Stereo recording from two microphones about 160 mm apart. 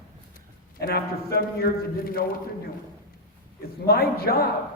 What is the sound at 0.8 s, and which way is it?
Speech, 70° left (ahead or behind).